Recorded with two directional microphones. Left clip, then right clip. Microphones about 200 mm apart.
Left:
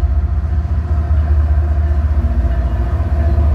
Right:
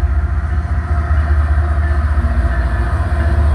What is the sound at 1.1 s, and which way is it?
Vehicle, 20° left (ahead or behind).